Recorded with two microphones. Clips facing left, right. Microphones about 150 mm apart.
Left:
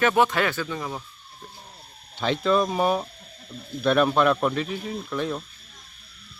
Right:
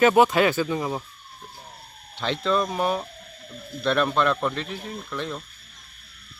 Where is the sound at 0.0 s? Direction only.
15° right (ahead or behind).